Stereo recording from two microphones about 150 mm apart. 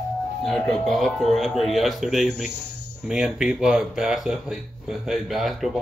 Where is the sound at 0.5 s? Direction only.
Centre (ahead or behind).